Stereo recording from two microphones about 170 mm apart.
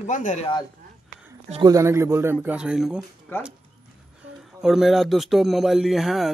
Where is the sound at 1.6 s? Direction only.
15° right (ahead or behind).